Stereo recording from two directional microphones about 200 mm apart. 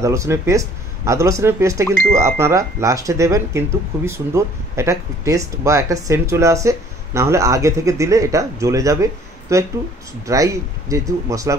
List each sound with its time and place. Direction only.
0.0 s speech: 15° right (ahead or behind)